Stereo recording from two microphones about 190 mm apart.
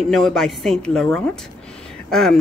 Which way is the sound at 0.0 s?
Centre (ahead or behind).